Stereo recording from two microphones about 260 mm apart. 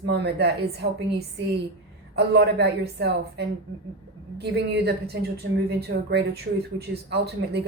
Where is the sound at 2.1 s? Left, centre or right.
Right.